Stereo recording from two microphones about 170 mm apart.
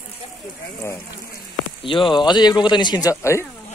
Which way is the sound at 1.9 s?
30° left (ahead or behind).